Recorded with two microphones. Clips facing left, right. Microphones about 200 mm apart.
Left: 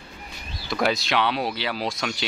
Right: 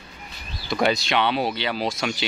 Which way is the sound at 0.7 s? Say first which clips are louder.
Right 2 dB; centre (ahead or behind).